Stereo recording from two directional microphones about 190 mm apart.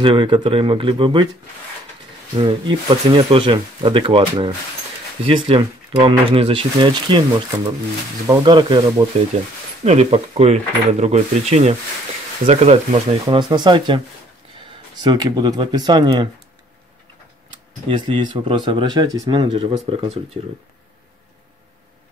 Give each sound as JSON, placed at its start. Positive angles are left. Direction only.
{"t": 0.0, "sound": "speech", "side_deg": -25}
{"t": 2.3, "sound": "speech", "side_deg": -25}
{"t": 9.3, "sound": "speech", "side_deg": -35}
{"t": 17.8, "sound": "speech", "side_deg": -25}